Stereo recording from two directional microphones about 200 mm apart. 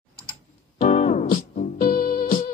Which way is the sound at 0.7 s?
35° left (ahead or behind).